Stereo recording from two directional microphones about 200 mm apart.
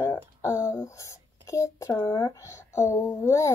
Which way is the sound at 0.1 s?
15° left (ahead or behind).